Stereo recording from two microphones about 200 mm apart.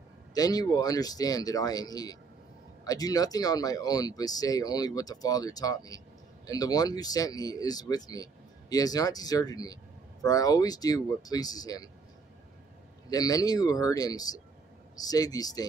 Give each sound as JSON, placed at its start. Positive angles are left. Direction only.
{"t": 0.3, "sound": "speech", "side_deg": 20}
{"t": 13.1, "sound": "speech", "side_deg": 20}